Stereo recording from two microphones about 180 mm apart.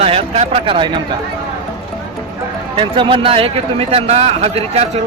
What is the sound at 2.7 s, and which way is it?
Speech, 30° right (ahead or behind).